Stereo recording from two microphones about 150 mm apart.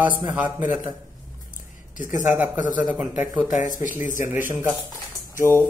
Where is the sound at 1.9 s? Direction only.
60° left (ahead or behind).